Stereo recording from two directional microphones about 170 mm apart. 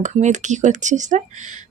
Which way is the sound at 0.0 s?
45° right (ahead or behind).